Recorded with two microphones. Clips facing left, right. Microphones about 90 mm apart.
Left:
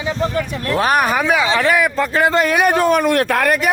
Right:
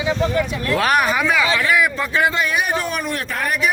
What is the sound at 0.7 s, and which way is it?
Speech, 30° left (ahead or behind).